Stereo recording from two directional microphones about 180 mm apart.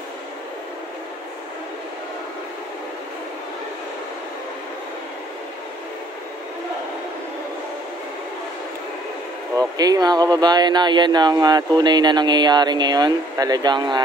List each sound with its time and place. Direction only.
9.6 s speech: 20° right (ahead or behind)